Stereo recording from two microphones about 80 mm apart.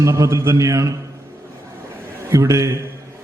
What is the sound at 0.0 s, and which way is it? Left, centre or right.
Speech, right.